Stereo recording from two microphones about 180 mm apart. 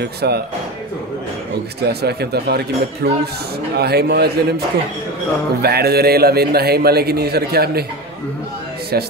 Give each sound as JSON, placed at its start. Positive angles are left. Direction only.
{"t": 0.0, "sound": "a man's voice", "side_deg": -65}
{"t": 1.8, "sound": "a man's voice", "side_deg": -65}
{"t": 5.6, "sound": "a man's voice", "side_deg": -60}
{"t": 8.9, "sound": "a man's voice", "side_deg": -60}